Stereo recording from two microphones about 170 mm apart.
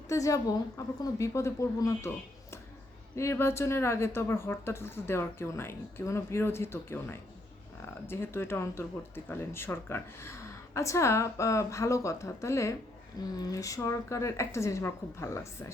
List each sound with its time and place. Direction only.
0.1 s a woman's voice: 20° left (ahead or behind)